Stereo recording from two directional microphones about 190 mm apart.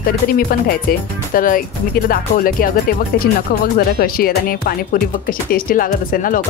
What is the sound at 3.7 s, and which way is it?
Speech, 50° left (ahead or behind).